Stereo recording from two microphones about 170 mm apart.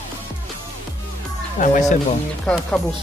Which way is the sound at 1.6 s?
50° left (ahead or behind).